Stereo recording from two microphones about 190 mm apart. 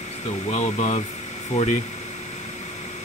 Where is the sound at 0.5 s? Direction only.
35° left (ahead or behind).